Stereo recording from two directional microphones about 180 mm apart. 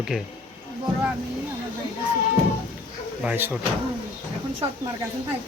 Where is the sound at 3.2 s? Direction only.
10° right (ahead or behind).